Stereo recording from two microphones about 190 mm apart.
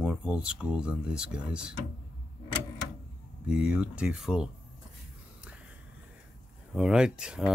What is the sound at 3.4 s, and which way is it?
Speech, 5° right (ahead or behind).